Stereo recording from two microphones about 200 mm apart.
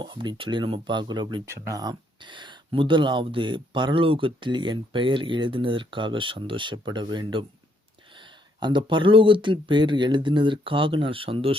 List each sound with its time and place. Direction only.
0.0 s speech: 25° right (ahead or behind)
8.6 s speech: 25° right (ahead or behind)